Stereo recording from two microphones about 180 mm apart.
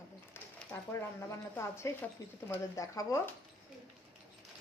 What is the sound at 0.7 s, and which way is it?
Speech, 15° left (ahead or behind).